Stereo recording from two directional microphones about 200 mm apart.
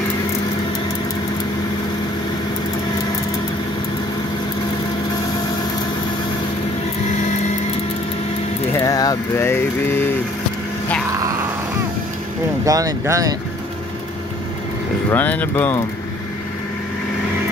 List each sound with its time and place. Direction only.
8.7 s mantra: 20° left (ahead or behind)
11.1 s a sound: 15° right (ahead or behind)
12.6 s speech: 15° right (ahead or behind)
15.0 s speech: 10° left (ahead or behind)